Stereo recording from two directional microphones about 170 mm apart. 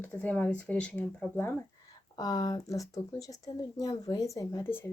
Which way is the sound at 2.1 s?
25° left (ahead or behind).